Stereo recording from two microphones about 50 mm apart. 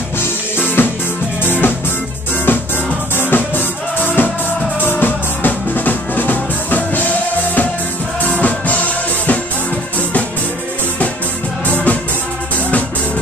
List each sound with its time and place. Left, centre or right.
0.8 s music: left
3.2 s music: left
8.2 s drum kit: left
11.7 s music: left